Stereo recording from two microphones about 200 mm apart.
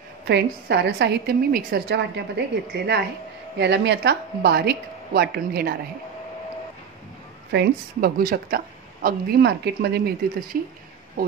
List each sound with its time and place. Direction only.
0.3 s a woman's voice: 55° right (ahead or behind)
7.5 s a woman's voice: 45° right (ahead or behind)
11.2 s a woman's voice: 45° right (ahead or behind)